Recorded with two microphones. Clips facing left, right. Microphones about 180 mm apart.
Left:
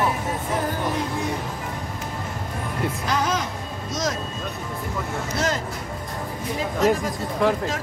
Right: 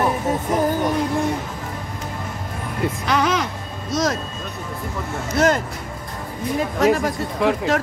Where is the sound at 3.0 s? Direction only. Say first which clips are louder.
Right 5 dB; 70° right (ahead or behind).